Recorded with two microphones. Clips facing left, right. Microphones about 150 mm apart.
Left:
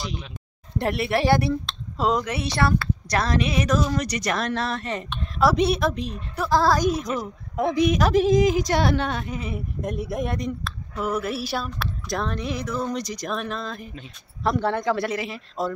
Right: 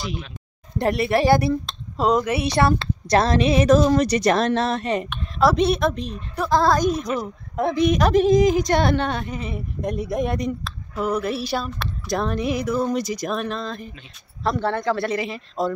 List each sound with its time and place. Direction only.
0.7 s speech: centre (ahead or behind); by 5.0 s 20° right (ahead or behind)
5.4 s a woman's voice: 10° left (ahead or behind)
15.1 s a woman's voice: centre (ahead or behind)